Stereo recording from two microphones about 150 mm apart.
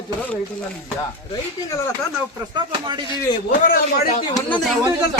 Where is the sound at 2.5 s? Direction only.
30° right (ahead or behind).